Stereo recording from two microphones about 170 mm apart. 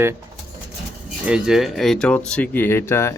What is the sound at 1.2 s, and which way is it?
Speech, 5° right (ahead or behind).